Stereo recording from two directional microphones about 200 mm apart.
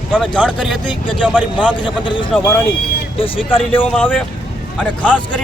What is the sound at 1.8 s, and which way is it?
Speech, 25° left (ahead or behind).